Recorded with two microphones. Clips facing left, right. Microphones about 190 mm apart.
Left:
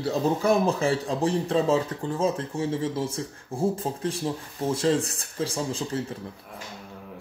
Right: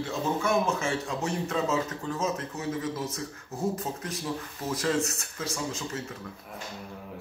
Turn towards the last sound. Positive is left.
turn(degrees=30)  # may be behind; listen again after turning